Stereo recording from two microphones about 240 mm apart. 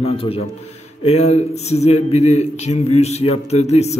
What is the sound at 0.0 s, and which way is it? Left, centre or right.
Speech, left.